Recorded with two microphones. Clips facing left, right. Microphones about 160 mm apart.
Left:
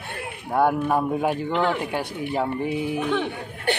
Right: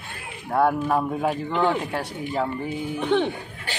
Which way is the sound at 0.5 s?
5° left (ahead or behind).